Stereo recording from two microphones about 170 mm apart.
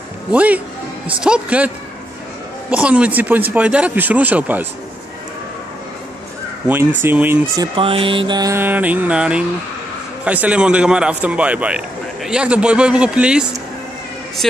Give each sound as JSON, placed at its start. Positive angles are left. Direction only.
{"t": 0.3, "sound": "a man's voice", "side_deg": -10}
{"t": 2.7, "sound": "a man's voice", "side_deg": -5}
{"t": 7.0, "sound": "a man's voice", "side_deg": -10}
{"t": 7.5, "sound": "mantra", "side_deg": -25}
{"t": 10.2, "sound": "a man's voice", "side_deg": -10}